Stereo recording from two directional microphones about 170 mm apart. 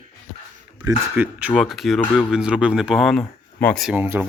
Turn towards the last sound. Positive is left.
turn(degrees=-10)  # may be behind; listen again after turning